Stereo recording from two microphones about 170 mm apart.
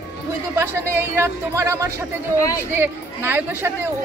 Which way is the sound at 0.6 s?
15° right (ahead or behind).